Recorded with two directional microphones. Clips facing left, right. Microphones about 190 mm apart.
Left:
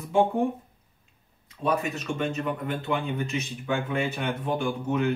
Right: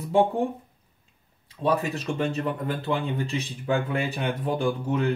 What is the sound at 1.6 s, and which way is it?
Speech, 30° right (ahead or behind).